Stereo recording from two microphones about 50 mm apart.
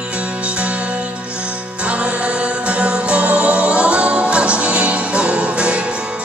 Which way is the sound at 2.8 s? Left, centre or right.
Right.